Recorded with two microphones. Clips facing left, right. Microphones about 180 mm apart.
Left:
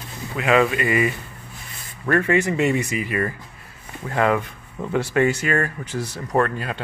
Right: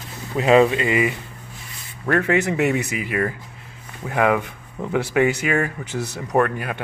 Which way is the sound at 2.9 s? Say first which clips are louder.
Right 1 dB; 15° right (ahead or behind).